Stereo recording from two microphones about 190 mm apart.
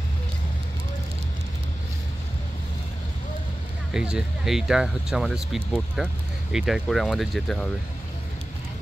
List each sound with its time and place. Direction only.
3.9 s speech: 5° right (ahead or behind)